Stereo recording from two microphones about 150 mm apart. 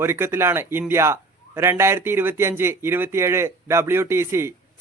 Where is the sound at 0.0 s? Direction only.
15° right (ahead or behind).